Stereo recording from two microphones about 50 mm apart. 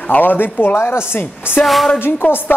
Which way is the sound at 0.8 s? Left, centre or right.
Left.